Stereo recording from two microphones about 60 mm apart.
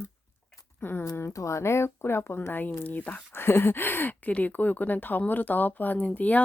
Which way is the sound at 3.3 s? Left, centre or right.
Left.